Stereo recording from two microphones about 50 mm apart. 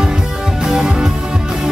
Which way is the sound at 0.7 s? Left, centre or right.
Centre.